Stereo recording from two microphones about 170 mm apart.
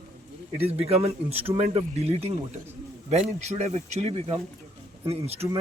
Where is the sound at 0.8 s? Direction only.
35° right (ahead or behind).